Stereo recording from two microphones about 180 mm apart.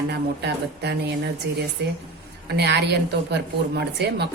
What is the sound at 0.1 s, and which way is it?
A woman's voice, 65° right (ahead or behind).